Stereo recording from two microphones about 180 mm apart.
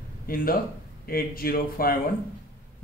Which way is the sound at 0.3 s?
55° left (ahead or behind).